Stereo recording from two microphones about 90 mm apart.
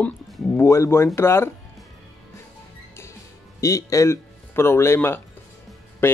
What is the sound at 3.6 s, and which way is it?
Speech, 35° left (ahead or behind).